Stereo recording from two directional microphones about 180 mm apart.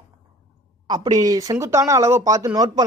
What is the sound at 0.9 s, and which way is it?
Speech, 20° right (ahead or behind).